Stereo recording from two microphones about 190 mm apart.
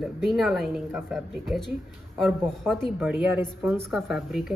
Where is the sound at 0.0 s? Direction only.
Centre (ahead or behind).